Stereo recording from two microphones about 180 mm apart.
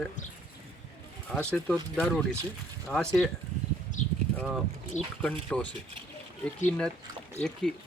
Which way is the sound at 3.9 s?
45° left (ahead or behind).